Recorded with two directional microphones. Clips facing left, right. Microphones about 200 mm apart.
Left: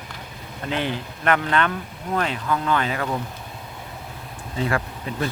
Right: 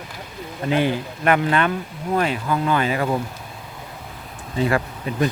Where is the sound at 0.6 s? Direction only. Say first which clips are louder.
Right 6 dB; 10° right (ahead or behind).